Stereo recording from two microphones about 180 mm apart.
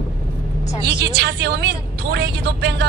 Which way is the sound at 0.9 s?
65° right (ahead or behind).